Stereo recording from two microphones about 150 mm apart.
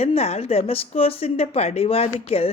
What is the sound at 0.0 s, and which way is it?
A woman's voice, 45° left (ahead or behind).